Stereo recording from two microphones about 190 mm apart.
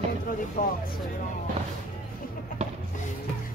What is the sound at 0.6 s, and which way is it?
Speech, 45° left (ahead or behind).